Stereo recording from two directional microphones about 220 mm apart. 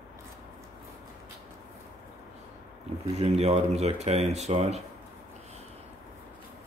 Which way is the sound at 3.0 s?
30° right (ahead or behind).